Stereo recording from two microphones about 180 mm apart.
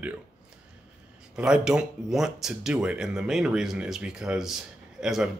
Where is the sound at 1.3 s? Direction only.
5° right (ahead or behind).